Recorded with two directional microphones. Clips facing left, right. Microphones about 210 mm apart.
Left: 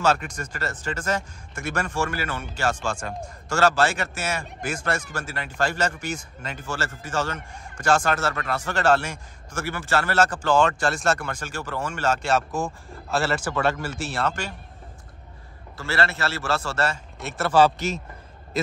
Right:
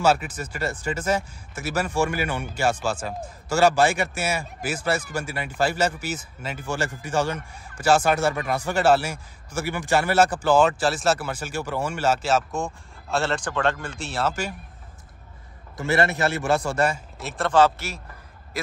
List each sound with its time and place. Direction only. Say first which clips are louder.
0.0 s speech: right 2 dB; 5° right (ahead or behind)
15.8 s speech: right 4 dB; 20° right (ahead or behind)
17.2 s speech: even; centre (ahead or behind)
17.5 s speech: left 1 dB; 10° left (ahead or behind)